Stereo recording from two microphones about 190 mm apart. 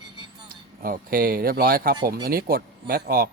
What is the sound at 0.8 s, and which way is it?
A man's voice, 50° right (ahead or behind).